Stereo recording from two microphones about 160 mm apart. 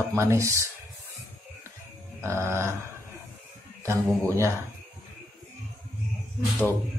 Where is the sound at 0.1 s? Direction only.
15° right (ahead or behind).